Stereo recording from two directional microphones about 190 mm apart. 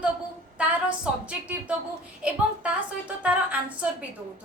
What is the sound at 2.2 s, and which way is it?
Speech, 5° right (ahead or behind).